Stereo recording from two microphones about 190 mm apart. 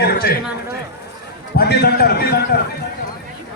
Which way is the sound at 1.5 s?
55° left (ahead or behind).